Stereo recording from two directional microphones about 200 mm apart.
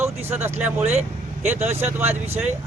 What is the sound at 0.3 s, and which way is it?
Speech, 10° right (ahead or behind).